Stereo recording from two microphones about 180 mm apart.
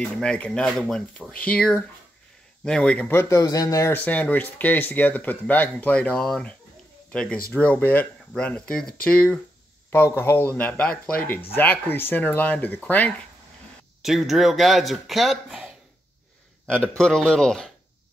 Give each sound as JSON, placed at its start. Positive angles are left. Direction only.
{"t": 0.0, "sound": "speech", "side_deg": 5}
{"t": 14.0, "sound": "speech", "side_deg": 0}